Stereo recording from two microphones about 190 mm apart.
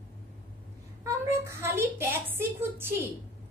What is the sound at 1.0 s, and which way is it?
A woman's voice, 15° right (ahead or behind).